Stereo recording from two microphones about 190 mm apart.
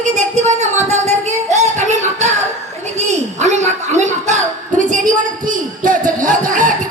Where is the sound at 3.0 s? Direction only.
35° right (ahead or behind).